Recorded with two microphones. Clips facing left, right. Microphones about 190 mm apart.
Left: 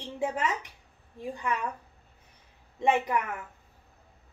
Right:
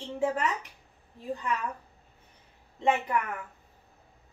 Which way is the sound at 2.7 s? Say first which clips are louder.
Left 1 dB; 20° left (ahead or behind).